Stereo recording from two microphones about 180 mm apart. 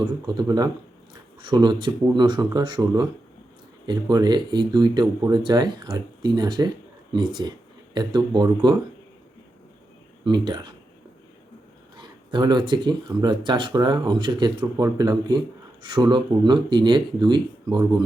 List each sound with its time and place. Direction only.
0.0 s speech: 25° right (ahead or behind)
10.2 s speech: 25° right (ahead or behind)
11.9 s speech: 25° right (ahead or behind)